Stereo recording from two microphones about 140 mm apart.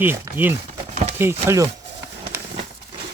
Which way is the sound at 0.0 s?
15° right (ahead or behind).